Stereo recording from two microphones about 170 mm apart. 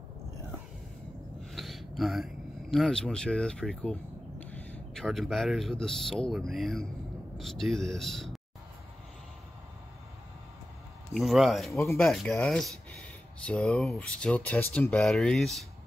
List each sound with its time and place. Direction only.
1.4 s speech: centre (ahead or behind)
11.1 s speech: centre (ahead or behind)
11.7 s speech: 15° left (ahead or behind)
12.0 s speech: centre (ahead or behind)